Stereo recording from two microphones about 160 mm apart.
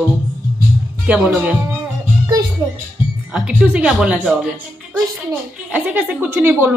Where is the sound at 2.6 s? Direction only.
15° right (ahead or behind).